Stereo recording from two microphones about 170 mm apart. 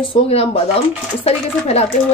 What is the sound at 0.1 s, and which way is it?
Speech, 35° left (ahead or behind).